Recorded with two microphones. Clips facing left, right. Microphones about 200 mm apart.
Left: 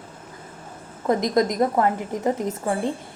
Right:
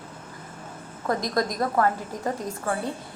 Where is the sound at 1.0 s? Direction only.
20° left (ahead or behind).